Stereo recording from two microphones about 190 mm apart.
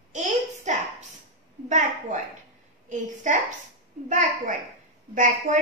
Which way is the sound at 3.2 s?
40° right (ahead or behind).